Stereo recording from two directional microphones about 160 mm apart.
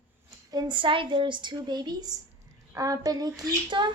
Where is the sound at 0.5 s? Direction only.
25° right (ahead or behind).